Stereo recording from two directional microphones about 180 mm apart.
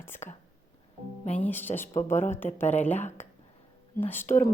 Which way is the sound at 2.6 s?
40° left (ahead or behind).